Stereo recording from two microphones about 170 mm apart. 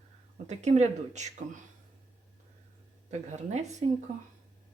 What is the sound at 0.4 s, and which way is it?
Speech, 40° right (ahead or behind).